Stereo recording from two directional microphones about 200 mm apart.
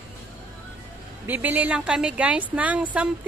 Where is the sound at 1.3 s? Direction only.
10° right (ahead or behind).